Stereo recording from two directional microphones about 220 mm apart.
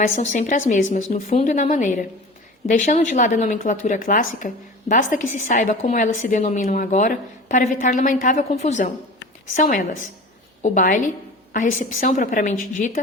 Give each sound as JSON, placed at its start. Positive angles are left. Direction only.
{"t": 0.0, "sound": "a woman's voice", "side_deg": 35}